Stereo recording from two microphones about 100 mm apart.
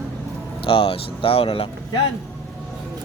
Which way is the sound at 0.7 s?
70° left (ahead or behind).